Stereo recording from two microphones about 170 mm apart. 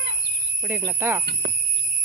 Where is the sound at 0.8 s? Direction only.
15° right (ahead or behind).